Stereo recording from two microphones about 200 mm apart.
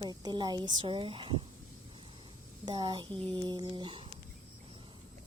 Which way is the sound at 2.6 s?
20° right (ahead or behind).